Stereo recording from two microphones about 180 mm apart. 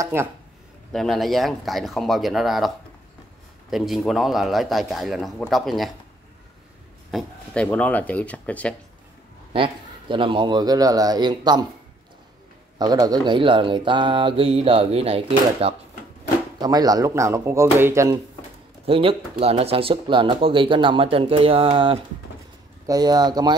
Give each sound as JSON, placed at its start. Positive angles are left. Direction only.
{"t": 0.0, "sound": "speech", "side_deg": -15}
{"t": 0.9, "sound": "speech", "side_deg": 0}
{"t": 3.7, "sound": "speech", "side_deg": 0}
{"t": 7.1, "sound": "speech", "side_deg": 0}
{"t": 9.5, "sound": "speech", "side_deg": -30}
{"t": 12.7, "sound": "speech", "side_deg": -20}
{"t": 16.5, "sound": "speech", "side_deg": -20}
{"t": 18.9, "sound": "speech", "side_deg": -30}